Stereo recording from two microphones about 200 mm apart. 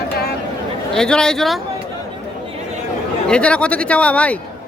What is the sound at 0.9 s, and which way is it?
Speech, 5° left (ahead or behind).